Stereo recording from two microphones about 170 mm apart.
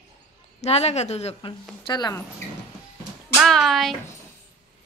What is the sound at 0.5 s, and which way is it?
Speech, 40° left (ahead or behind).